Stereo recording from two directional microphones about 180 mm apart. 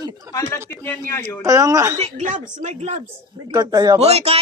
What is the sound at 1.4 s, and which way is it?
Speech, 20° right (ahead or behind).